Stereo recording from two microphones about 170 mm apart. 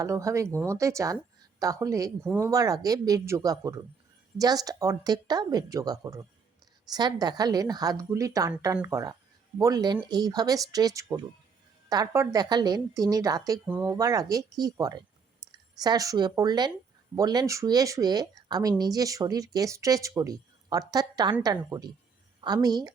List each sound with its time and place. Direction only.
0.0 s a woman's voice: 20° right (ahead or behind)